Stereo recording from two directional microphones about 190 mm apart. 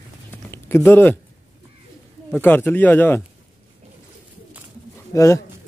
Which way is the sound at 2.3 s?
10° left (ahead or behind).